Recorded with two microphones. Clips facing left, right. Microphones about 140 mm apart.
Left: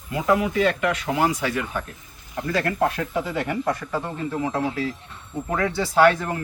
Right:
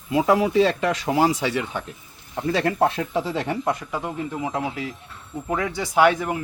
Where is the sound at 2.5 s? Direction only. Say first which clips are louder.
Right 2 dB; 25° right (ahead or behind).